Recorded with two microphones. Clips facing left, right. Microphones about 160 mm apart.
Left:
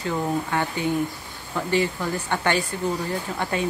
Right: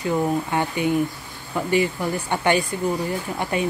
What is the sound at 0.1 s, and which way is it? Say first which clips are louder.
Speech: right 3 dB; 15° right (ahead or behind).